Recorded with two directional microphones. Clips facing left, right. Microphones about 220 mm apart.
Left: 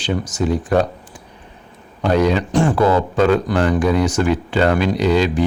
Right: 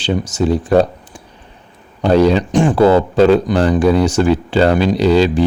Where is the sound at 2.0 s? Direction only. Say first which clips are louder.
Right 5 dB; 30° right (ahead or behind).